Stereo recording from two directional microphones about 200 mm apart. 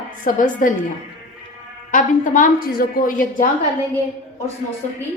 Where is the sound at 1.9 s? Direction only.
40° left (ahead or behind).